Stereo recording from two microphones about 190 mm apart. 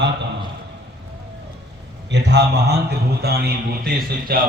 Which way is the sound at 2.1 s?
65° right (ahead or behind).